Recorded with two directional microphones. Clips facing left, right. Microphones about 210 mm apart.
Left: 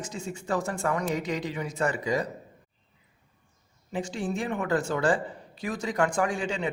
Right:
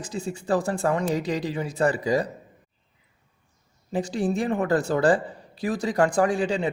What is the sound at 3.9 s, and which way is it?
Speech, 35° right (ahead or behind).